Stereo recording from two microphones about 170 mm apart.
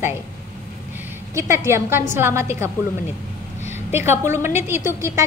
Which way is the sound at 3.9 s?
15° right (ahead or behind).